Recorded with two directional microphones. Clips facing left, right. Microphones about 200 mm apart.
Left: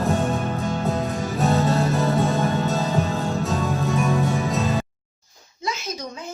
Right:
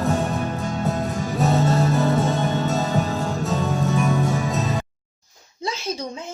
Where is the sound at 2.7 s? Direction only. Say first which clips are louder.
Even; centre (ahead or behind).